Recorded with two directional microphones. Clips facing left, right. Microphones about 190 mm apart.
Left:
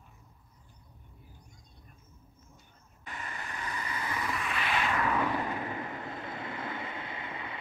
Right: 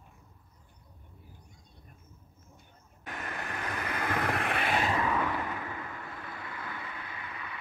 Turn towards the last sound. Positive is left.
turn(degrees=25)  # may be behind; listen again after turning